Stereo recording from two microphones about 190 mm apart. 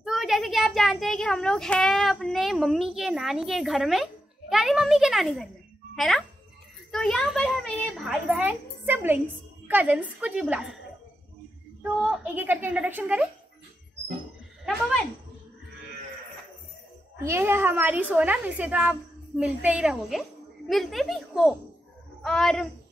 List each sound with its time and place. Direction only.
0.0 s a child's voice: centre (ahead or behind)
11.8 s a woman's voice: 5° right (ahead or behind)
17.2 s a woman's voice: 15° right (ahead or behind); by 22.7 s centre (ahead or behind)